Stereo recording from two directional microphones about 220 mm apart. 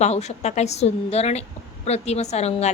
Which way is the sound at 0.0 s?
30° left (ahead or behind).